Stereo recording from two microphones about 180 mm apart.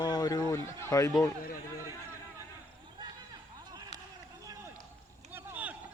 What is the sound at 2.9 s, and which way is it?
Run, 25° right (ahead or behind).